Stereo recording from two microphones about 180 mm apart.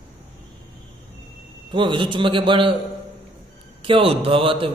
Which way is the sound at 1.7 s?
25° right (ahead or behind).